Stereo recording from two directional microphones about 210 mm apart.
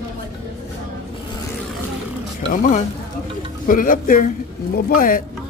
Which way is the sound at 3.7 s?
40° left (ahead or behind).